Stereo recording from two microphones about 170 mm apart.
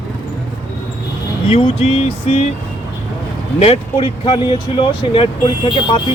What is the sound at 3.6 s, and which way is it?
Speech, 35° left (ahead or behind).